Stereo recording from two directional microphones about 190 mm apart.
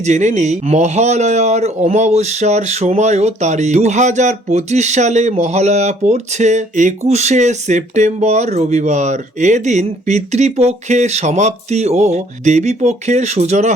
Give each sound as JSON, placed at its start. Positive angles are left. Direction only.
{"t": 0.0, "sound": "a man's voice", "side_deg": -40}